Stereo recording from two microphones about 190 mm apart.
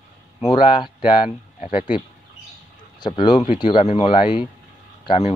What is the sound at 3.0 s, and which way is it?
Speech, 25° left (ahead or behind).